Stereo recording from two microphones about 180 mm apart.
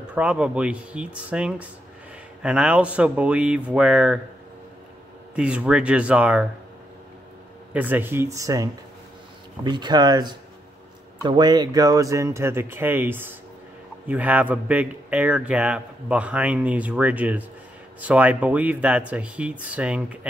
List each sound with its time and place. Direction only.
0.1 s speech: 5° right (ahead or behind)
5.3 s speech: 5° right (ahead or behind)
7.7 s speech: 10° right (ahead or behind)
9.7 s speech: 25° right (ahead or behind); by 20.2 s 5° right (ahead or behind)